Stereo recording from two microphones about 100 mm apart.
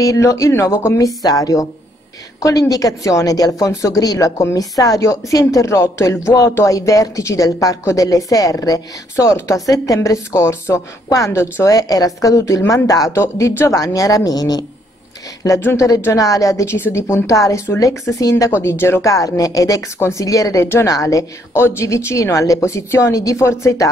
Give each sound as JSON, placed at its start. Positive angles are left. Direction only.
{"t": 0.0, "sound": "a woman's voice", "side_deg": 35}
{"t": 15.6, "sound": "a woman's voice", "side_deg": 30}